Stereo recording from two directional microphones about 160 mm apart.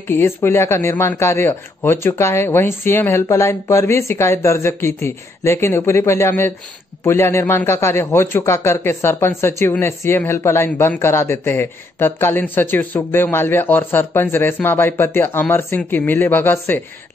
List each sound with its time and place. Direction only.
0.1 s a man's voice: 15° left (ahead or behind)